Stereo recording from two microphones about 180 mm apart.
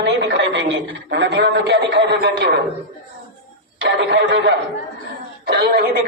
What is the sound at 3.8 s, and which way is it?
Speech, 75° right (ahead or behind).